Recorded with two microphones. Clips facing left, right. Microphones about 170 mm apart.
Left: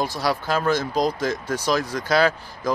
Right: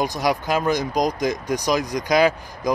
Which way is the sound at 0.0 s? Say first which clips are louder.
Right 2 dB; 15° right (ahead or behind).